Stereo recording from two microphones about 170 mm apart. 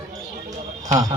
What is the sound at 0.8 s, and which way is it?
Speech, 20° right (ahead or behind).